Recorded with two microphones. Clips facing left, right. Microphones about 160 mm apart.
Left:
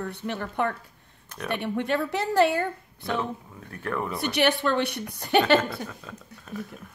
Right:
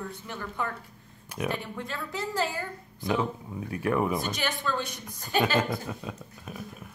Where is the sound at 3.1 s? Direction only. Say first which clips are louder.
Right 1 dB; 15° right (ahead or behind).